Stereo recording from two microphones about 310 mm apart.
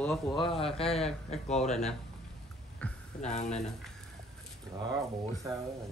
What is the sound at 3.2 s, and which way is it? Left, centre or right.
Speech, left.